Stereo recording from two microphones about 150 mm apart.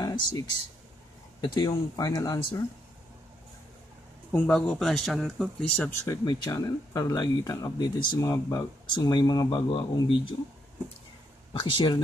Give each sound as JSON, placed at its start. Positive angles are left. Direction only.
{"t": 0.0, "sound": "a sound", "side_deg": 25}
{"t": 1.4, "sound": "speech", "side_deg": 25}
{"t": 4.3, "sound": "speech", "side_deg": 5}
{"t": 6.0, "sound": "speech", "side_deg": 25}
{"t": 11.6, "sound": "speech", "side_deg": 30}